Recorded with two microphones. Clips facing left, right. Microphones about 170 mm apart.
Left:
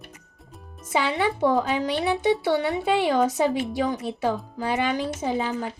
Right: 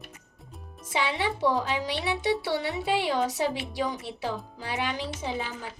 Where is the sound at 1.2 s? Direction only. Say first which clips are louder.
Left 5 dB; 55° left (ahead or behind).